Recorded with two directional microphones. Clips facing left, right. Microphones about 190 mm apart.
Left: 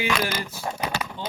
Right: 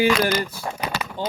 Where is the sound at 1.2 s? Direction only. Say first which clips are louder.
Right 6 dB; 40° right (ahead or behind).